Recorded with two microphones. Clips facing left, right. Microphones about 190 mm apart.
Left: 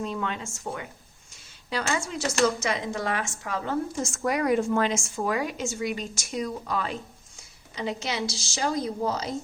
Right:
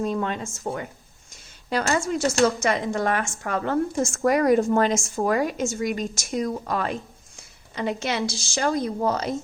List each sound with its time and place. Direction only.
0.0 s a woman's voice: 40° right (ahead or behind); by 9.3 s 60° right (ahead or behind)